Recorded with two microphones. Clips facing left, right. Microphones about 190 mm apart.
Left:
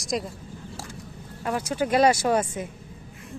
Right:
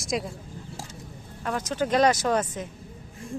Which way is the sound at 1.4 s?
10° left (ahead or behind).